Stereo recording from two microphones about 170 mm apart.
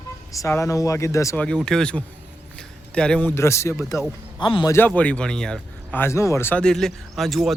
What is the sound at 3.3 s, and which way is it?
Speech, 15° left (ahead or behind).